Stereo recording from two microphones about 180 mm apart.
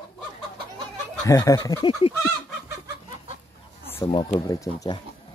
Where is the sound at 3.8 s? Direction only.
10° left (ahead or behind).